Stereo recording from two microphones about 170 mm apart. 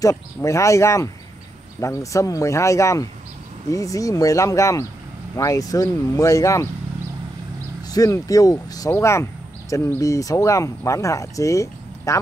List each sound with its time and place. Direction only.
0.0 s speech: 20° left (ahead or behind)
7.9 s speech: 20° left (ahead or behind)